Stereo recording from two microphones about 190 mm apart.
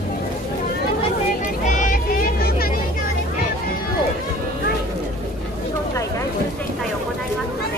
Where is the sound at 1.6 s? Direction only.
40° left (ahead or behind).